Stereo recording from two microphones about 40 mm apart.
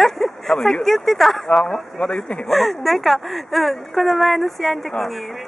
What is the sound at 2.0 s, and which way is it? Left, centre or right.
Speech, left.